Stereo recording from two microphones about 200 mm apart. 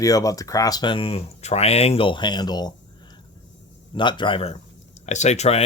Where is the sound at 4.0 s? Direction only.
25° left (ahead or behind).